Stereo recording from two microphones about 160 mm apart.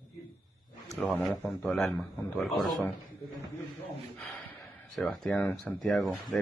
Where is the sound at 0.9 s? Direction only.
5° left (ahead or behind).